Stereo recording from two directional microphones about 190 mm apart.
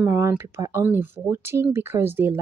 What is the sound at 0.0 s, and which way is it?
Speech, 10° right (ahead or behind).